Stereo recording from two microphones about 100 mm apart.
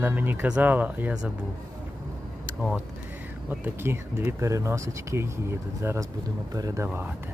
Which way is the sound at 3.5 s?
20° right (ahead or behind).